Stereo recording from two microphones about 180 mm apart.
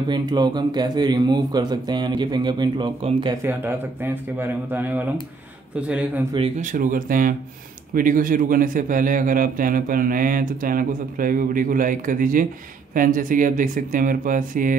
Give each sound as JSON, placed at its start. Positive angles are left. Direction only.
{"t": 0.1, "sound": "speech", "side_deg": -25}
{"t": 3.4, "sound": "speech", "side_deg": -10}
{"t": 6.6, "sound": "a man's voice", "side_deg": -45}